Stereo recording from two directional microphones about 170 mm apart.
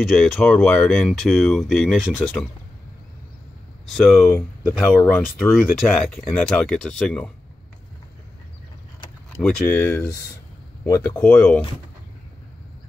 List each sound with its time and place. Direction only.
0.0 s speech: centre (ahead or behind)
3.8 s speech: centre (ahead or behind)
9.4 s speech: 10° left (ahead or behind)
11.1 s speech: 5° left (ahead or behind)